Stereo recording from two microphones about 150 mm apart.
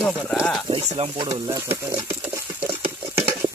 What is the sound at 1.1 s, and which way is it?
Stir, 25° right (ahead or behind).